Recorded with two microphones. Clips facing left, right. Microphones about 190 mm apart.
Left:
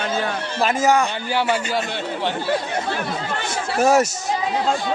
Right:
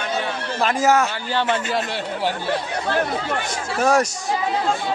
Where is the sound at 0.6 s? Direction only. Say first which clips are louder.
Even; centre (ahead or behind).